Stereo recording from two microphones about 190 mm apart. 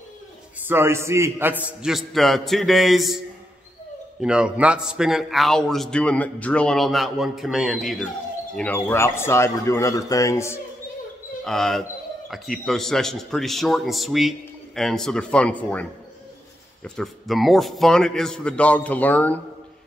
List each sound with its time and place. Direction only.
0.6 s a man's voice: 10° right (ahead or behind)
4.2 s a man's voice: 5° right (ahead or behind); by 10.6 s 15° left (ahead or behind)
11.4 s a man's voice: centre (ahead or behind)